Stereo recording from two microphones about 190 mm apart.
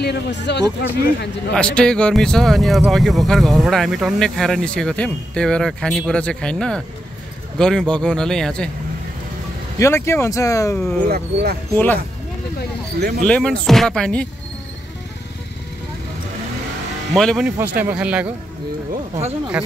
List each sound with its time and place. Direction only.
0.0 s speech: 65° left (ahead or behind)
1.5 s speech: 5° left (ahead or behind)
9.8 s speech: 15° left (ahead or behind)
11.1 s speech: 55° right (ahead or behind)
11.7 s speech: 10° left (ahead or behind)
13.2 s speech: 5° left (ahead or behind)
17.1 s speech: centre (ahead or behind)
17.5 s speech: 10° right (ahead or behind)